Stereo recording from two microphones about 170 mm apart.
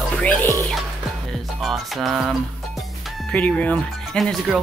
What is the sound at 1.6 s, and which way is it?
Speech, centre (ahead or behind).